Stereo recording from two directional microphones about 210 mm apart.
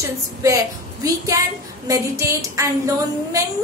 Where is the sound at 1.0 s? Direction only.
15° right (ahead or behind).